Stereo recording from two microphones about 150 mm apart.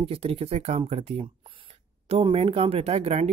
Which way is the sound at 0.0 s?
40° right (ahead or behind).